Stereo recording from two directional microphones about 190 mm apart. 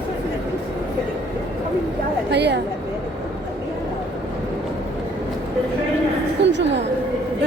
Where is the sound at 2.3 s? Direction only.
60° right (ahead or behind).